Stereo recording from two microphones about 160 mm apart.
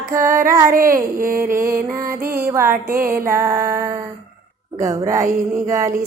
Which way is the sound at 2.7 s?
60° right (ahead or behind).